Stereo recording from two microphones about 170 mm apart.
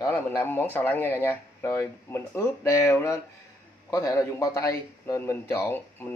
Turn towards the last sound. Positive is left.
turn(degrees=15)  # may be behind; listen again after turning